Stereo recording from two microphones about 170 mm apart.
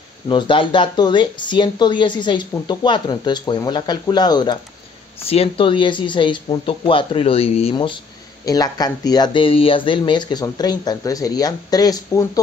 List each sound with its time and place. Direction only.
0.3 s speech: 30° left (ahead or behind)
5.2 s speech: 35° left (ahead or behind); by 12.3 s 20° left (ahead or behind)